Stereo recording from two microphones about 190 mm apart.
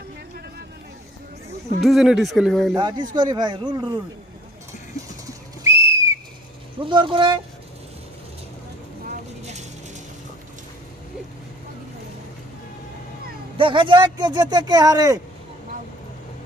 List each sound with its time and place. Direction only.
1.8 s speech: centre (ahead or behind)
2.7 s speech: 20° right (ahead or behind)
5.2 s whistle: 15° right (ahead or behind)
6.7 s speech: 25° right (ahead or behind)
9.4 s vehicle: 35° right (ahead or behind)
13.6 s speech: 25° right (ahead or behind)